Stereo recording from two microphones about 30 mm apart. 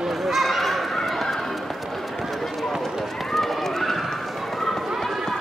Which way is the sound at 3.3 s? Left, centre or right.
Centre.